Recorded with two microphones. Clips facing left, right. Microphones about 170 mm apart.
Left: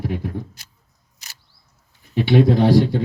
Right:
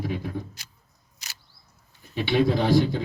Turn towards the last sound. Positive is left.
turn(degrees=65)  # may be behind; listen again after turning